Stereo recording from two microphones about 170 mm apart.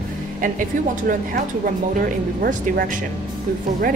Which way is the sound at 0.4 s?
55° right (ahead or behind).